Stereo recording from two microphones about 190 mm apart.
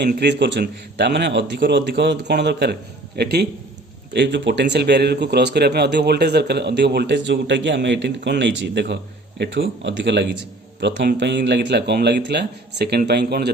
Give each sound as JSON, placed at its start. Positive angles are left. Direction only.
{"t": 0.0, "sound": "a man's voice", "side_deg": -65}
{"t": 4.1, "sound": "a man's voice", "side_deg": -70}